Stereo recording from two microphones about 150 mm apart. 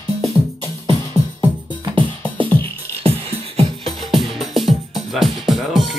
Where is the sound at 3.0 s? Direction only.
40° right (ahead or behind).